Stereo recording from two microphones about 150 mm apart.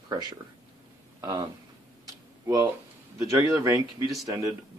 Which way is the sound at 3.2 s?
20° right (ahead or behind).